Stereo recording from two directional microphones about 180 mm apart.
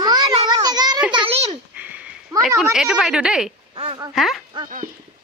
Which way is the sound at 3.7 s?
30° right (ahead or behind).